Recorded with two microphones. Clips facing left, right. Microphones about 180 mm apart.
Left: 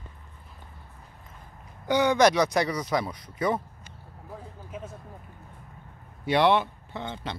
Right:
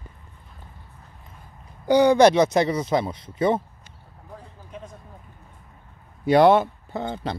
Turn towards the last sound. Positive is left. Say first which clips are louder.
# right 6 dB
turn(degrees=-40)  # may be behind; listen again after turning